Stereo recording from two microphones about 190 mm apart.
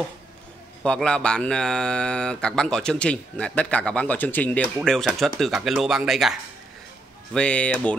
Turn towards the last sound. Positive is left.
turn(degrees=5)  # may be behind; listen again after turning